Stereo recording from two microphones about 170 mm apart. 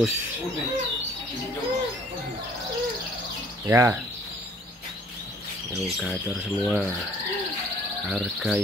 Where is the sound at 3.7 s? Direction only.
15° right (ahead or behind).